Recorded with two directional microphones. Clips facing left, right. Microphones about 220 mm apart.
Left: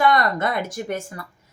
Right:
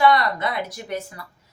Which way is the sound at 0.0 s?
45° left (ahead or behind).